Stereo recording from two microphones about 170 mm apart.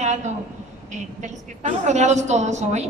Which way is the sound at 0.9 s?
45° right (ahead or behind).